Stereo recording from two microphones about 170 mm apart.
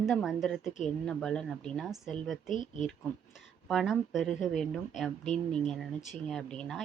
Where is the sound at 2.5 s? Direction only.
45° left (ahead or behind).